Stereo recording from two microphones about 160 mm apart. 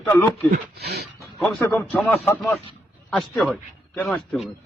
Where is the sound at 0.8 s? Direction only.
90° right.